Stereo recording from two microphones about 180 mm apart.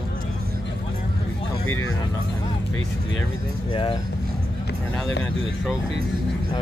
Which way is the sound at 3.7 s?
30° left (ahead or behind).